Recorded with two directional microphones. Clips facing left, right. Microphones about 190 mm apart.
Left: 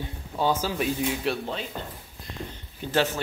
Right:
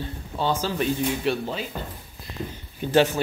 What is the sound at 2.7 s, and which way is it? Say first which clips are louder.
Speech: right 5 dB; 15° right (ahead or behind).